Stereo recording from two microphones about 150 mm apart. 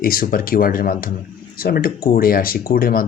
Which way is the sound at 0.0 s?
75° left (ahead or behind).